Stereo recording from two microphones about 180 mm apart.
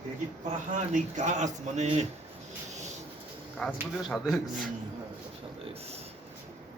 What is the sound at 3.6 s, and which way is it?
A man's voice, 5° left (ahead or behind).